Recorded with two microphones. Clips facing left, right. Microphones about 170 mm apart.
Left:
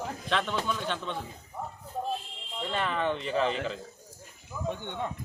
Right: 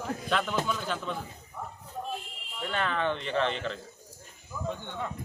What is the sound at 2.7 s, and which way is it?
A man's voice, centre (ahead or behind).